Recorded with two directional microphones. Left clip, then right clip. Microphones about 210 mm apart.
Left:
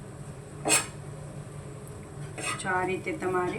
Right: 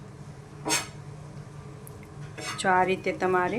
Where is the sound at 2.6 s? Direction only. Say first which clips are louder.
Right 7 dB; 50° right (ahead or behind).